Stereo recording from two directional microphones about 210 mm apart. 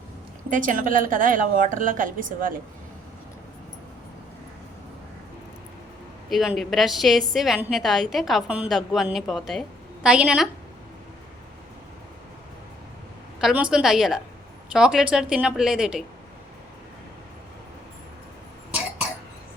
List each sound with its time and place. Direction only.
0.5 s a woman's voice: 40° right (ahead or behind)
6.3 s a woman's voice: centre (ahead or behind)
13.4 s a woman's voice: 5° right (ahead or behind)